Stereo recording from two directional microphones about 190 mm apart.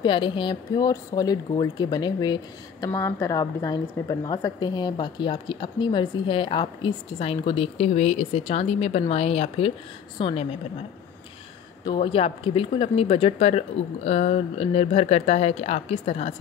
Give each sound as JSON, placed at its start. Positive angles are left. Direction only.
{"t": 0.0, "sound": "a woman's voice", "side_deg": 25}
{"t": 11.8, "sound": "speech", "side_deg": 25}